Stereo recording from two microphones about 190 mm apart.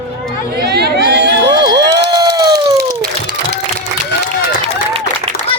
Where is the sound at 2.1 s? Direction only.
25° right (ahead or behind).